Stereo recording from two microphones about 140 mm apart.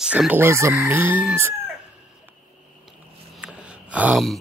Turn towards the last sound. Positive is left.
turn(degrees=-10)  # may be behind; listen again after turning